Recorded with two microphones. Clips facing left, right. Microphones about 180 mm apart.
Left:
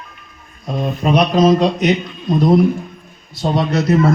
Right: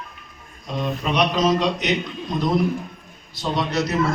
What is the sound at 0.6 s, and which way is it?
Speech, 50° left (ahead or behind).